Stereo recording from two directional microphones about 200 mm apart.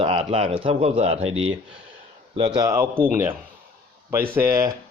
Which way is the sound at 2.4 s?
20° right (ahead or behind).